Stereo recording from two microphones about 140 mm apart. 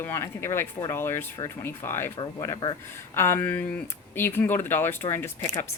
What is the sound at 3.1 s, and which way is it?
Speech, 15° left (ahead or behind).